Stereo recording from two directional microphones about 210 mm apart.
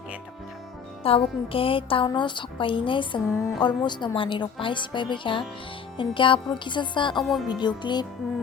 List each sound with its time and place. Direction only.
1.0 s a woman's voice: 25° left (ahead or behind)
7.2 s speech: centre (ahead or behind)
7.4 s a woman's voice: 20° left (ahead or behind)